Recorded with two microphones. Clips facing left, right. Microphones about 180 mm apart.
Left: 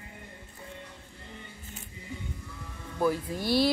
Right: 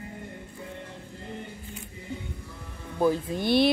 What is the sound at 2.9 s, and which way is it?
Speech, 20° right (ahead or behind).